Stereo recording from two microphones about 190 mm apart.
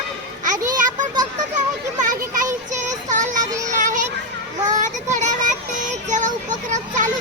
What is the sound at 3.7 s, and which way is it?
Children playing, 40° right (ahead or behind).